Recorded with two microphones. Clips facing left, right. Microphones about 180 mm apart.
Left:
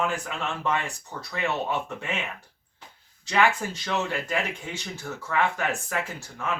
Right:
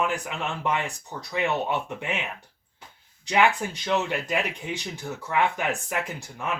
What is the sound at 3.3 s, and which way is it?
Speech, 15° right (ahead or behind).